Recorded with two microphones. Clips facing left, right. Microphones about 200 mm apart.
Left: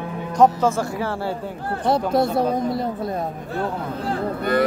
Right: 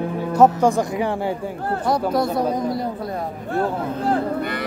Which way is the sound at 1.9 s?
25° left (ahead or behind).